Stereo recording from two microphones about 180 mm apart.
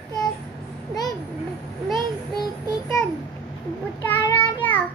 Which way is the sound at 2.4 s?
20° left (ahead or behind).